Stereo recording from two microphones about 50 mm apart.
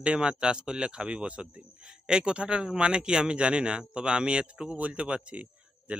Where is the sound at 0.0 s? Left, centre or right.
Centre.